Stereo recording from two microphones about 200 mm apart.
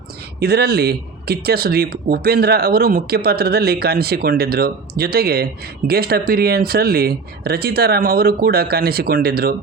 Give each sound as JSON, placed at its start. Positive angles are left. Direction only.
{"t": 0.3, "sound": "speech", "side_deg": -55}